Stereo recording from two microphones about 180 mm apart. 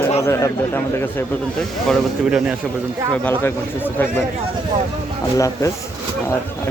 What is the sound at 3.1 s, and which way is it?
Speech, 10° left (ahead or behind).